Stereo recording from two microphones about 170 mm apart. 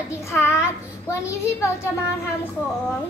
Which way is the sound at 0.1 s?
15° left (ahead or behind).